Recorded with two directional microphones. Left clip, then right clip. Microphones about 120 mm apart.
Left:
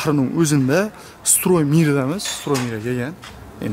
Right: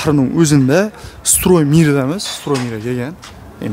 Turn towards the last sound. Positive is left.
turn(degrees=-10)  # may be behind; listen again after turning